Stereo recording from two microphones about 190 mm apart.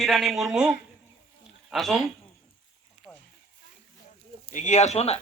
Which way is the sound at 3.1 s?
Centre (ahead or behind).